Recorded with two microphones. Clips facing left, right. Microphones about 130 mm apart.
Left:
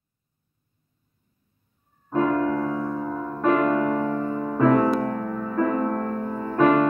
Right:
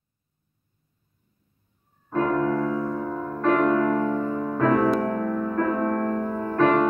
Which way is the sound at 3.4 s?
10° left (ahead or behind).